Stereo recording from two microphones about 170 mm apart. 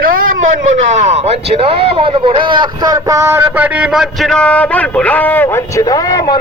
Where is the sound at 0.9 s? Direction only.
40° right (ahead or behind).